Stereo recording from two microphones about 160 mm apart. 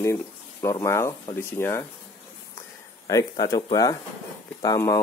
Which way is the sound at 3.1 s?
20° left (ahead or behind).